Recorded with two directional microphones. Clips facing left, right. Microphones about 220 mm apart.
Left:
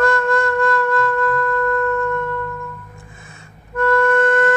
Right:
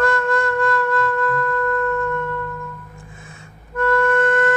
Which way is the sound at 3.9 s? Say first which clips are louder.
Left 2 dB; 45° left (ahead or behind).